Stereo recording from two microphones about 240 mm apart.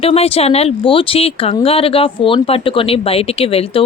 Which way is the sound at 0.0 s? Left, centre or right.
Left.